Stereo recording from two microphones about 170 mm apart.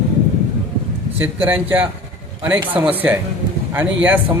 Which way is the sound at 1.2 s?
10° right (ahead or behind).